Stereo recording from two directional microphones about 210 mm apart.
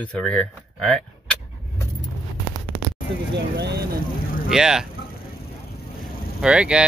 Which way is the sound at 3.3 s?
50° right (ahead or behind).